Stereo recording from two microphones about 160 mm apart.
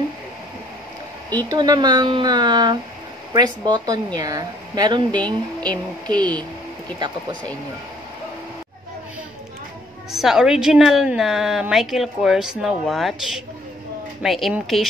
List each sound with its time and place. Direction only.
1.5 s speech: 25° right (ahead or behind)
10.1 s a woman's voice: centre (ahead or behind)